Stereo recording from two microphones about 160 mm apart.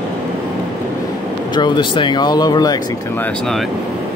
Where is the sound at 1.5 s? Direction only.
30° left (ahead or behind).